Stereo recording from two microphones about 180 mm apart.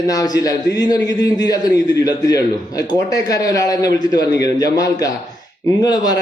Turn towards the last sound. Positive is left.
turn(degrees=20)  # may be behind; listen again after turning